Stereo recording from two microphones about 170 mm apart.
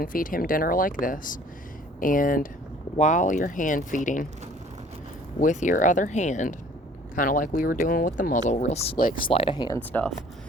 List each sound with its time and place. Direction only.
0.0 s speech: 55° left (ahead or behind)
5.4 s speech: 45° left (ahead or behind)
9.0 s speech: 55° left (ahead or behind)
9.2 s speech: 35° left (ahead or behind)